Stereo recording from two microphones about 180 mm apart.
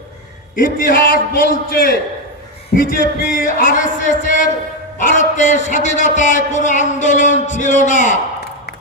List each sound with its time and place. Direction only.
0.5 s a man's voice: 50° left (ahead or behind)